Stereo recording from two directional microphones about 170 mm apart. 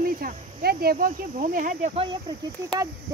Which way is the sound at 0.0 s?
55° right (ahead or behind).